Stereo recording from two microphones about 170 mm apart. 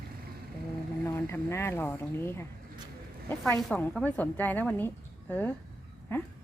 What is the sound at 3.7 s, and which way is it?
A woman's voice, 10° left (ahead or behind).